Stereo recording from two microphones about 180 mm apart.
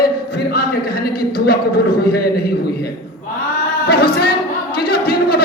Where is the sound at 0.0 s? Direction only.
55° left (ahead or behind).